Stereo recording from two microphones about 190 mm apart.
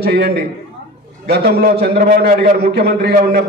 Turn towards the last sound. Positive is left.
turn(degrees=-55)  # may be behind; listen again after turning